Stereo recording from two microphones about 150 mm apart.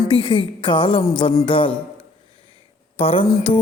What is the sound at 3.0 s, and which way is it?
Speech, 40° left (ahead or behind).